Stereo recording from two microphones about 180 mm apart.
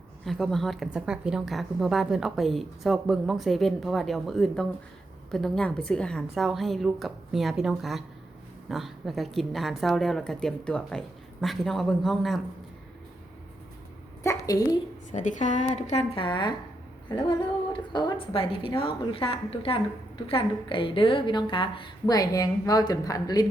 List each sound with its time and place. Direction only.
0.3 s a woman's voice: centre (ahead or behind)
14.3 s a woman's voice: 20° left (ahead or behind)
15.1 s a woman's voice: 45° left (ahead or behind); by 23.5 s 20° left (ahead or behind)